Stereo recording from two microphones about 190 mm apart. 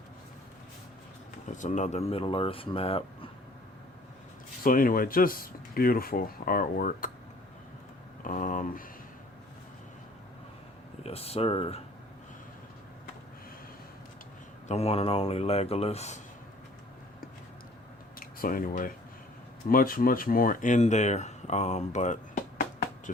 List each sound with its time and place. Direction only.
1.5 s speech: 40° left (ahead or behind)
4.6 s speech: 45° left (ahead or behind)
8.2 s a sound: 45° left (ahead or behind)
11.0 s speech: 30° left (ahead or behind)
14.7 s speech: 35° left (ahead or behind)
18.2 s speech: 45° left (ahead or behind)